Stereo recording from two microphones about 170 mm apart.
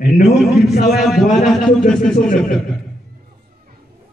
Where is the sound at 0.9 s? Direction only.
Centre (ahead or behind).